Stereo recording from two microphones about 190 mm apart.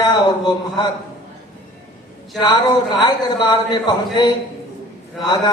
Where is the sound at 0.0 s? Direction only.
20° left (ahead or behind).